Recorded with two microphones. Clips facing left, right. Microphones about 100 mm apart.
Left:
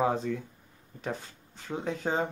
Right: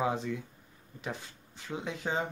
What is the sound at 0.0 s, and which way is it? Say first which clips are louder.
Speech: left 4 dB; 40° left (ahead or behind).